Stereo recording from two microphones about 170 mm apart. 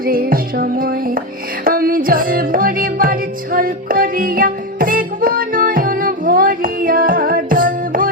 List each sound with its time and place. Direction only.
0.0 s music: 60° right (ahead or behind)